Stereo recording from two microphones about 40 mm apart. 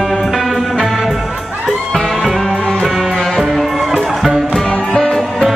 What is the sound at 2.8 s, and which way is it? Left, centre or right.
Music, centre.